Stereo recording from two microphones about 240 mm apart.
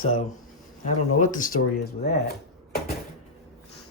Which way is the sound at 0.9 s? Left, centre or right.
Left.